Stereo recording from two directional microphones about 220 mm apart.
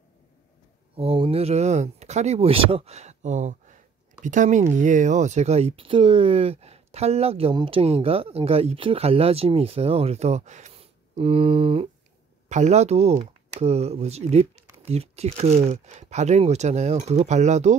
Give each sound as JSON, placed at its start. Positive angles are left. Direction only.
{"t": 0.9, "sound": "speech", "side_deg": -25}